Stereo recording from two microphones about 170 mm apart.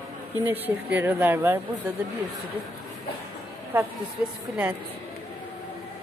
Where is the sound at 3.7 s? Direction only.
15° right (ahead or behind).